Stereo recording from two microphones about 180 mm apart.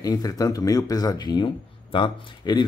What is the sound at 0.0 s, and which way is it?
Speech, 20° left (ahead or behind).